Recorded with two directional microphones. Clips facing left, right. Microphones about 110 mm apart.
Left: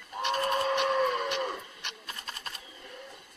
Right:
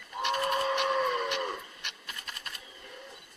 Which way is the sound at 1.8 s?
30° left (ahead or behind).